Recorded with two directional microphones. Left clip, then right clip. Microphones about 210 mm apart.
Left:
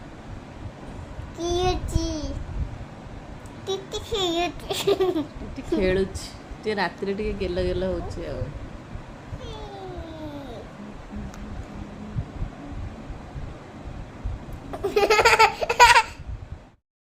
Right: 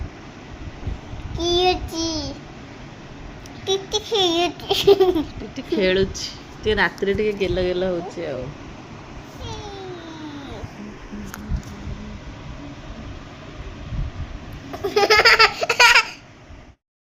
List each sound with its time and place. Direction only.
1.5 s child singing: 15° left (ahead or behind)
3.7 s speech: 10° left (ahead or behind)
14.8 s baby laughter: 20° left (ahead or behind)